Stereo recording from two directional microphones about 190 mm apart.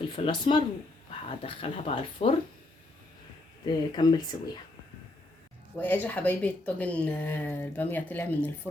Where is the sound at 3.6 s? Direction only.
20° left (ahead or behind).